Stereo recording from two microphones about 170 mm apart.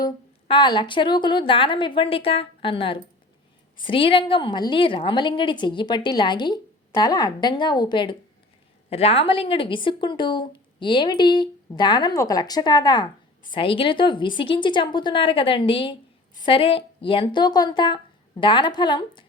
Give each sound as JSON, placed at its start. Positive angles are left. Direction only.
{"t": 0.0, "sound": "a woman's voice", "side_deg": 30}